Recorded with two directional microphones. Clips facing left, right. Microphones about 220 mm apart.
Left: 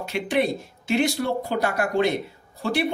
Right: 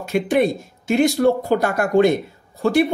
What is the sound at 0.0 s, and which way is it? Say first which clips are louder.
A man's voice: right 6 dB; 45° right (ahead or behind).